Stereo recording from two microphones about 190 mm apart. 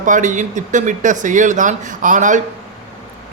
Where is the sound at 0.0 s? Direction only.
40° right (ahead or behind).